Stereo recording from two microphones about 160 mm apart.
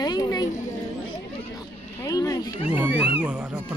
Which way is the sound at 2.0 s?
20° left (ahead or behind).